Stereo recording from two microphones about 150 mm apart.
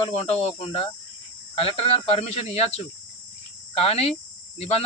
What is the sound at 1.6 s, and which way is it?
Speech, 40° left (ahead or behind).